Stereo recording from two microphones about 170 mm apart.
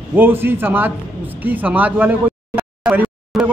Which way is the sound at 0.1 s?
10° right (ahead or behind).